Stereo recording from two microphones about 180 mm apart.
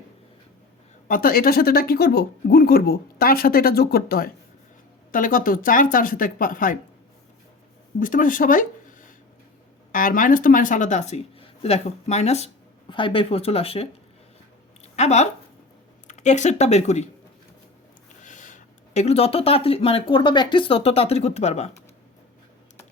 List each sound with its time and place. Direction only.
1.0 s speech: 50° left (ahead or behind)
7.9 s speech: 50° left (ahead or behind)
14.9 s speech: 40° left (ahead or behind)
18.2 s speech: 45° left (ahead or behind)